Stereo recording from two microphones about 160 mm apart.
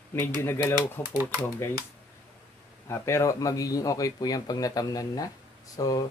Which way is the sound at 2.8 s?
15° left (ahead or behind).